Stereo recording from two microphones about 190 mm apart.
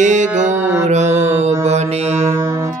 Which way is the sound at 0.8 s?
35° right (ahead or behind).